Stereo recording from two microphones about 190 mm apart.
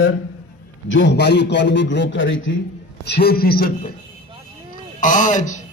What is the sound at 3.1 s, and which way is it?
Speech, 55° left (ahead or behind).